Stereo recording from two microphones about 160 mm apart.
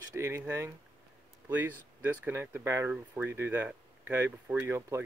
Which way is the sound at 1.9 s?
10° right (ahead or behind).